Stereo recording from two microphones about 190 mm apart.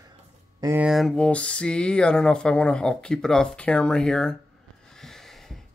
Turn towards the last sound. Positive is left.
turn(degrees=5)  # may be behind; listen again after turning